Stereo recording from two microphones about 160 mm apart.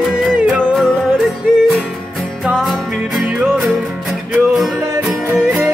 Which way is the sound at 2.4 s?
Centre (ahead or behind).